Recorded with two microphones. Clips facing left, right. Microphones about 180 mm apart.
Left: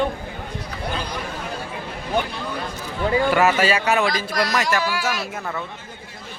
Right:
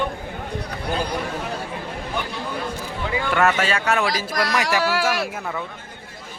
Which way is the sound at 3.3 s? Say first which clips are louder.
Right 2 dB; 5° left (ahead or behind).